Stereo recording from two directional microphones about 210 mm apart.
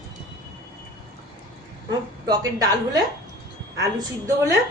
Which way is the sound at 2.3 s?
20° right (ahead or behind).